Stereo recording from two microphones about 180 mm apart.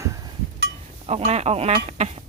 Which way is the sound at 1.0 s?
35° right (ahead or behind).